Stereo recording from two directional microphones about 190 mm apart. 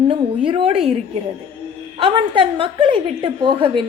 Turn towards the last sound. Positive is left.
turn(degrees=-25)  # may be behind; listen again after turning